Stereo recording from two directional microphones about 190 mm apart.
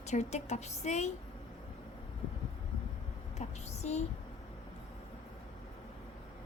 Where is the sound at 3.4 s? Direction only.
35° left (ahead or behind).